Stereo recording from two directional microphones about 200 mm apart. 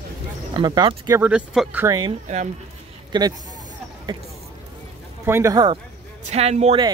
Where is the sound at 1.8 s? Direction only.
20° right (ahead or behind).